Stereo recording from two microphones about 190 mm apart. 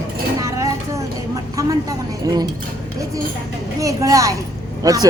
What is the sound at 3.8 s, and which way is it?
Speech, 15° right (ahead or behind).